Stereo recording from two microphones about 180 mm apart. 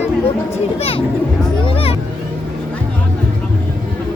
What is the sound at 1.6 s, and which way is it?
Music, 30° left (ahead or behind).